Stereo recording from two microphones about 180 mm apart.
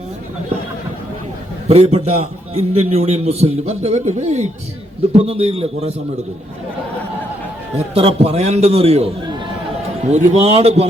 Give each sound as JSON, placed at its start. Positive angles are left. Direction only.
{"t": 1.6, "sound": "a man's voice", "side_deg": -35}
{"t": 7.8, "sound": "a man's voice", "side_deg": -35}